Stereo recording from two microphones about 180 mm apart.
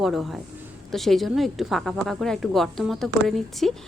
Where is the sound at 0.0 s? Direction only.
Centre (ahead or behind).